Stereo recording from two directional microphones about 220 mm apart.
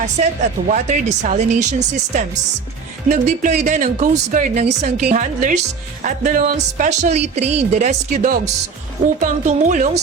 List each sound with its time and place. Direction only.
0.7 s a woman's voice: 35° right (ahead or behind)